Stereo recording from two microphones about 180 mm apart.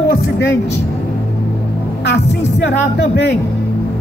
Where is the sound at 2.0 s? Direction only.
70° left (ahead or behind).